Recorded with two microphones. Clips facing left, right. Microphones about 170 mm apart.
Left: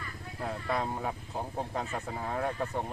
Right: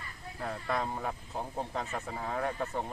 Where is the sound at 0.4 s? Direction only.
5° left (ahead or behind).